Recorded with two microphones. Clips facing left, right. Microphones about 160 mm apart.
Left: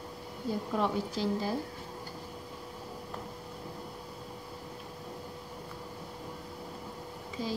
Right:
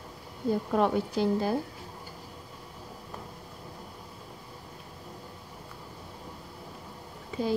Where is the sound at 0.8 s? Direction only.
55° right (ahead or behind).